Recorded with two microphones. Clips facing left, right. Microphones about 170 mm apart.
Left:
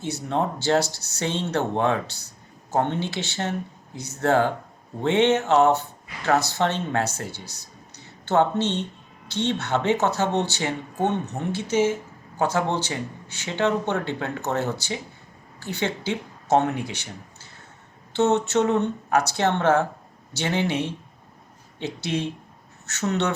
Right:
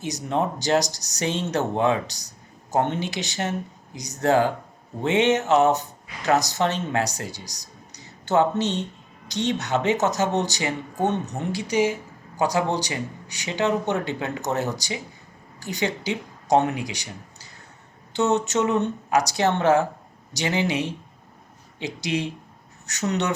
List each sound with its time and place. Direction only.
0.0 s speech: 15° right (ahead or behind)
18.1 s speech: 15° right (ahead or behind)